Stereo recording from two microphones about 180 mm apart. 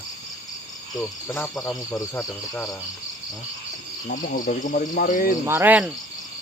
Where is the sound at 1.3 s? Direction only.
15° left (ahead or behind).